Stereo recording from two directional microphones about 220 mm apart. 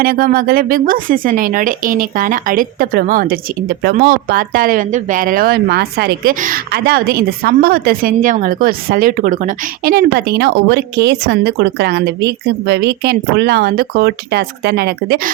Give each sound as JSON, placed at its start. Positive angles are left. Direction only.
{"t": 0.0, "sound": "speech", "side_deg": -40}